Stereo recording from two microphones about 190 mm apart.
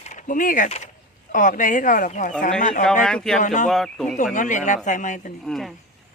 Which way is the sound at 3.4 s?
40° left (ahead or behind).